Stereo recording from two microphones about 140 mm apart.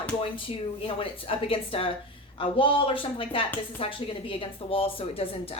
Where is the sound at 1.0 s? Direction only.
40° left (ahead or behind).